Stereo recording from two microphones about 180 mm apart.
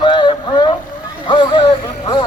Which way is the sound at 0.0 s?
25° left (ahead or behind).